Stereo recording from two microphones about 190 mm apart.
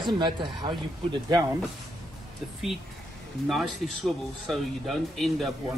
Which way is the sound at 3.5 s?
Centre (ahead or behind).